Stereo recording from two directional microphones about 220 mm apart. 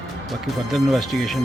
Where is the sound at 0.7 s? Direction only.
Centre (ahead or behind).